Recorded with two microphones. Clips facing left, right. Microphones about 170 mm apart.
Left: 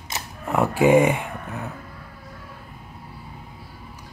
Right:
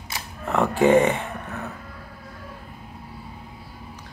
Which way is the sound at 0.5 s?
10° left (ahead or behind).